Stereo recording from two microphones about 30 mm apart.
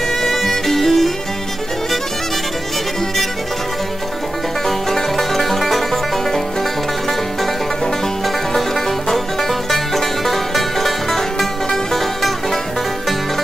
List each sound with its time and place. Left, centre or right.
0.2 s music: centre
4.6 s music: centre
9.1 s music: centre